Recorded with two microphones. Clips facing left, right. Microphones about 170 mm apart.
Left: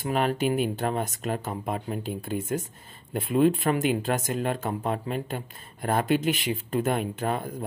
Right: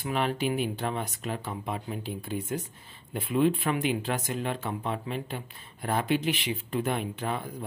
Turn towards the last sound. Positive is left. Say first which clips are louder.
# left 4 dB
turn(degrees=45)  # may be behind; listen again after turning